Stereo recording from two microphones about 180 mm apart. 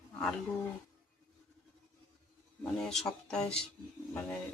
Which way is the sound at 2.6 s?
5° left (ahead or behind).